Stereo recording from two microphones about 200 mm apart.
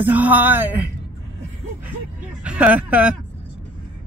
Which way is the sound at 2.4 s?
5° right (ahead or behind).